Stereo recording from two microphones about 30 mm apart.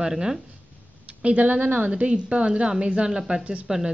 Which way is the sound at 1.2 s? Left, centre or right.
Right.